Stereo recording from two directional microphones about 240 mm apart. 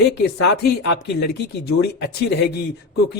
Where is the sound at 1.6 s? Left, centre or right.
Left.